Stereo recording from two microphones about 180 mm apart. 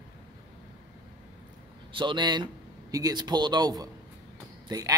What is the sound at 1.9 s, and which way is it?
A man's voice, 25° right (ahead or behind).